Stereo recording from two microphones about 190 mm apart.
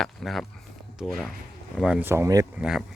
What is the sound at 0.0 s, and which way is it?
Speech, centre (ahead or behind).